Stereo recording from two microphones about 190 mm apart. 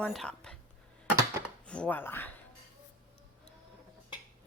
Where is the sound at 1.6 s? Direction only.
5° left (ahead or behind).